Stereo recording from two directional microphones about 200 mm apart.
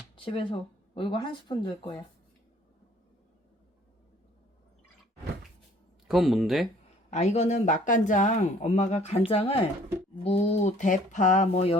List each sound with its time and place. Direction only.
0.3 s speech: 25° left (ahead or behind)
6.1 s speech: centre (ahead or behind)
7.1 s speech: 35° left (ahead or behind)